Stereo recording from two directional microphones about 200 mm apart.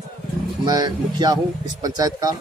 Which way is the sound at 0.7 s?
20° right (ahead or behind).